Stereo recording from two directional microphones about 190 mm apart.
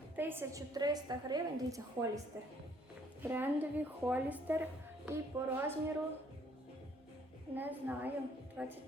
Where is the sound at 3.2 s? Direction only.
10° right (ahead or behind).